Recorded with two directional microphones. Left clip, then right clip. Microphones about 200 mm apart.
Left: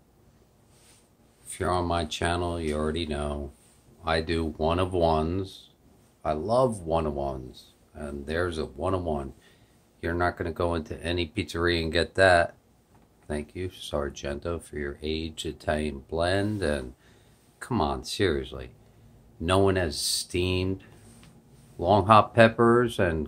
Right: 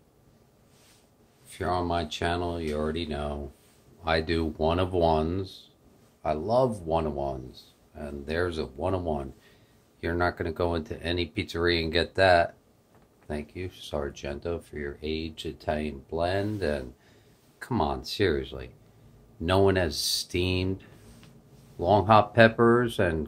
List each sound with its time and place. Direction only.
1.5 s speech: 25° left (ahead or behind)
4.0 s a man's voice: centre (ahead or behind)